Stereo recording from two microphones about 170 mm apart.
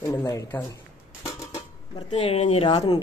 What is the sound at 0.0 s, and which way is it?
Speech, 15° left (ahead or behind).